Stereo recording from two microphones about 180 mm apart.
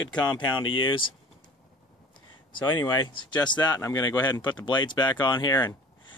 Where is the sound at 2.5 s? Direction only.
20° left (ahead or behind).